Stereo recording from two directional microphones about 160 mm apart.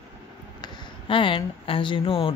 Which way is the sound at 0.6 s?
30° left (ahead or behind).